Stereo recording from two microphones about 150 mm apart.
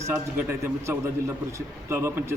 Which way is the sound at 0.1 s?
15° right (ahead or behind).